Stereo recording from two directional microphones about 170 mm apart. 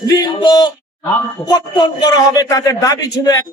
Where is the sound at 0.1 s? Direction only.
20° left (ahead or behind).